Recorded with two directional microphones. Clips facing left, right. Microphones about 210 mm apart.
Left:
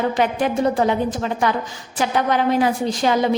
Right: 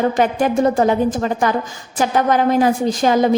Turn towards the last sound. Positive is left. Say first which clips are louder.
# right 4 dB
turn(degrees=-45)  # may be behind; listen again after turning